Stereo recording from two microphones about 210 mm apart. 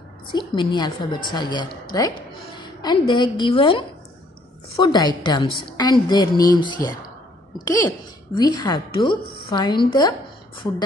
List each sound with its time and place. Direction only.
0.3 s a woman's voice: 20° left (ahead or behind)
4.8 s a woman's voice: 20° left (ahead or behind)